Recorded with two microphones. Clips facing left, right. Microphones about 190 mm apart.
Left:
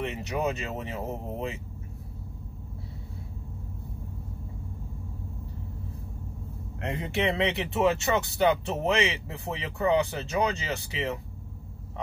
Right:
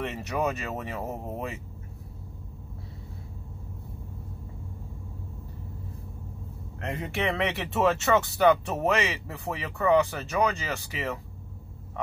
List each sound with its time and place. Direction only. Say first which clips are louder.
0.0 s speech: even; 20° left (ahead or behind)
7.2 s speech: left 2 dB; 20° left (ahead or behind)